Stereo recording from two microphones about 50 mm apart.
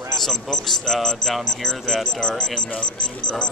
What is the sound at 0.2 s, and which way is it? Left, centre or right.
A man's voice, centre.